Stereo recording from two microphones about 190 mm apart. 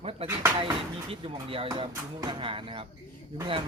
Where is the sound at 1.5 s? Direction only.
30° right (ahead or behind).